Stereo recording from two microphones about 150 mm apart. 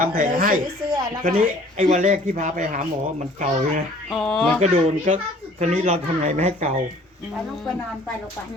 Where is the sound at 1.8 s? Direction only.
55° right (ahead or behind).